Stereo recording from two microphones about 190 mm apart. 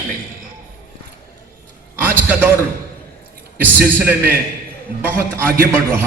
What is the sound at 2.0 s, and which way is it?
Speech, 10° right (ahead or behind).